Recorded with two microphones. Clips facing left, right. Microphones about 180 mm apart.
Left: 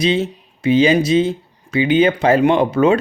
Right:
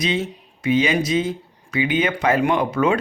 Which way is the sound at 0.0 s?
30° left (ahead or behind).